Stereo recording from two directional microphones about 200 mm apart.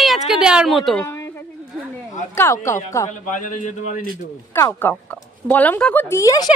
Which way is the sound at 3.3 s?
40° left (ahead or behind).